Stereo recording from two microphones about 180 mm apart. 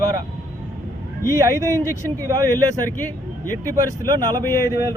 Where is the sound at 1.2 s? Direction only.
15° right (ahead or behind).